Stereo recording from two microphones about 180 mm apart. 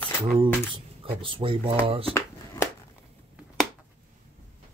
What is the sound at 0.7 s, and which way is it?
Speech, 30° right (ahead or behind).